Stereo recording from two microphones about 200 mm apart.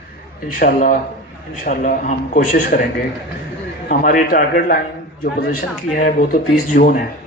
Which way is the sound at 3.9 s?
45° left (ahead or behind).